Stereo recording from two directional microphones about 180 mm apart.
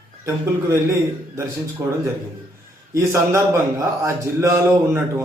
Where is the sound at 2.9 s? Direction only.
15° right (ahead or behind).